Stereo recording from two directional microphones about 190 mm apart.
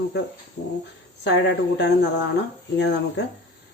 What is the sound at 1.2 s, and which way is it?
Speech, 65° left (ahead or behind).